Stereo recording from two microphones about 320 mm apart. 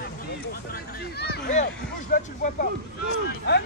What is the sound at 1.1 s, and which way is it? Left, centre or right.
Speech, left.